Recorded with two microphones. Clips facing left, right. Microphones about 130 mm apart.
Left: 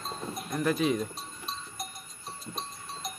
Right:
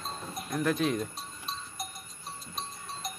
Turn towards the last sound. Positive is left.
turn(degrees=0)  # may be behind; listen again after turning